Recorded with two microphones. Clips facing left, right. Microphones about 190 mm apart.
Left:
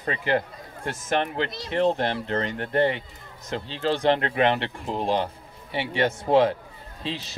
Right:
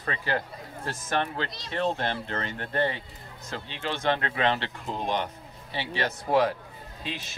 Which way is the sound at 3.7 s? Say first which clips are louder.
Left 6 dB; 35° left (ahead or behind).